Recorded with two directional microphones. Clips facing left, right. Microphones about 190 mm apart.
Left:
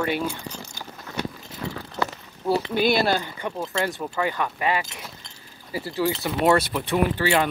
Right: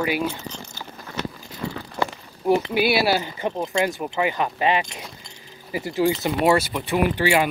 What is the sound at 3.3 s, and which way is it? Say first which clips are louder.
Speech: right 4 dB; 25° right (ahead or behind).